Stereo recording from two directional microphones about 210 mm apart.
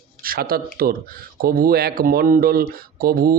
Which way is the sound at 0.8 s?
45° right (ahead or behind).